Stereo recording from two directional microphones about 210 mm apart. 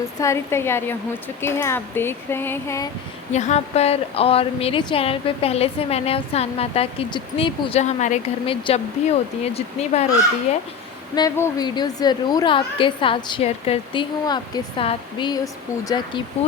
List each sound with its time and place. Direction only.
0.2 s speech: 15° left (ahead or behind)
3.3 s speech: 35° left (ahead or behind)
11.1 s speech: 15° left (ahead or behind)